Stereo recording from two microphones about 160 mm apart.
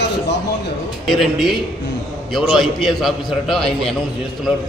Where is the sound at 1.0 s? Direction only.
Centre (ahead or behind).